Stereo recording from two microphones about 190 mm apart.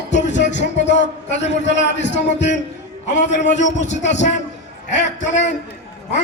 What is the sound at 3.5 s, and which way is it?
A man's voice, 40° left (ahead or behind).